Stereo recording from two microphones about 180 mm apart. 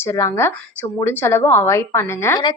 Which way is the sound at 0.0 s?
15° left (ahead or behind).